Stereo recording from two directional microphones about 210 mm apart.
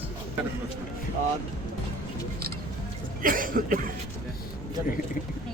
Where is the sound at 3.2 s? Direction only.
40° right (ahead or behind).